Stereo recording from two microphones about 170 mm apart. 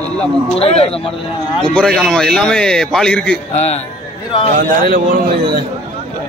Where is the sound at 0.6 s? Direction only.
35° left (ahead or behind).